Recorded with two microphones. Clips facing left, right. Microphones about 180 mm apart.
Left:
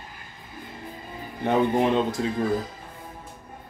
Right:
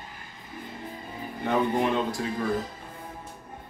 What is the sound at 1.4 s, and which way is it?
Speech, 20° left (ahead or behind).